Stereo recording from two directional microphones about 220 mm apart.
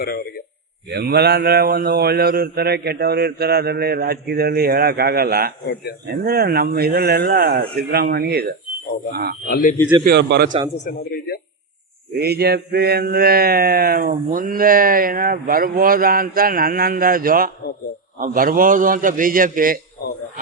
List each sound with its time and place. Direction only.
0.9 s speech: 45° right (ahead or behind)
9.5 s a man's voice: 40° left (ahead or behind)
10.0 s speech: 50° right (ahead or behind)
10.8 s a man's voice: 45° left (ahead or behind)
12.2 s a sound: 45° right (ahead or behind)